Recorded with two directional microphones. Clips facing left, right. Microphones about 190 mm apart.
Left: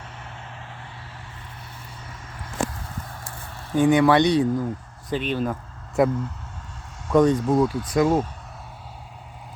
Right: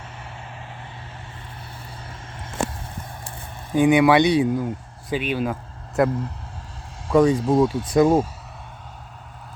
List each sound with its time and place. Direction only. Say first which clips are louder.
2.0 s a sound: right 2 dB; 25° right (ahead or behind); by 5.5 s 10° right (ahead or behind)
6.0 s speech: even; centre (ahead or behind)
7.4 s speech: right 2 dB; 30° right (ahead or behind)
8.0 s speech: right 3 dB; 10° right (ahead or behind)